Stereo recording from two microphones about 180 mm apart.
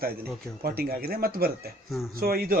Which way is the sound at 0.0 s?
55° right (ahead or behind).